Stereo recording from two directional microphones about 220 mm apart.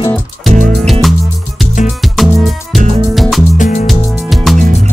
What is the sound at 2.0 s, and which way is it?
Music, centre (ahead or behind).